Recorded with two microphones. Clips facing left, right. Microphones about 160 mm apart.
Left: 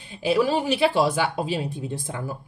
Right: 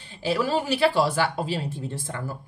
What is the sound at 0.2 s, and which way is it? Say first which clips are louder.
A woman's voice: left 3 dB; 15° left (ahead or behind).